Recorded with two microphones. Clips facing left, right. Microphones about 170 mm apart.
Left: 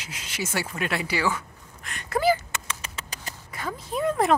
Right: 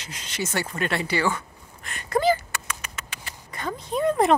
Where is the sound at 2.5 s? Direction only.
30° left (ahead or behind).